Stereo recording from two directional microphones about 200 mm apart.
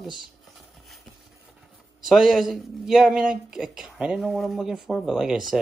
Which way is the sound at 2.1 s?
Centre (ahead or behind).